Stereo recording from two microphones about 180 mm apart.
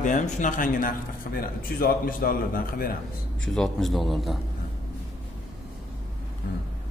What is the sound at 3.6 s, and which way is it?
Speech, centre (ahead or behind).